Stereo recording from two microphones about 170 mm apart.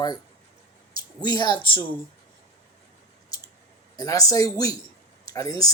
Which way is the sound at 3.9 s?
20° left (ahead or behind).